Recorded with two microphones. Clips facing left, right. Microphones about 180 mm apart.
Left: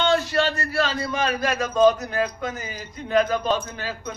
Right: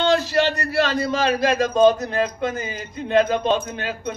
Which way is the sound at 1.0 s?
30° right (ahead or behind).